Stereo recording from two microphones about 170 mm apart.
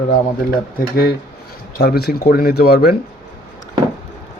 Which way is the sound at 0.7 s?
65° left (ahead or behind).